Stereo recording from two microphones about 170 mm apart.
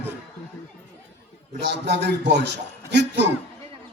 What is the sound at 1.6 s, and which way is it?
Speech, 80° right.